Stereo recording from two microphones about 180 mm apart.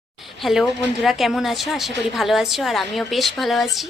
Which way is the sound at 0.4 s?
Centre (ahead or behind).